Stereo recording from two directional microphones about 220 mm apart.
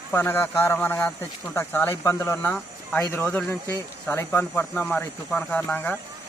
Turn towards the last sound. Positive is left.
turn(degrees=10)  # may be behind; listen again after turning